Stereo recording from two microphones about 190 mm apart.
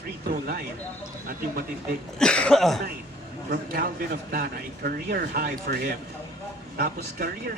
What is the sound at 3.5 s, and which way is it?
Speech, 50° right (ahead or behind).